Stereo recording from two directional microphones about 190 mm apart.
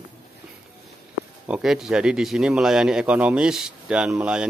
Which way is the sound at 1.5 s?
Centre (ahead or behind).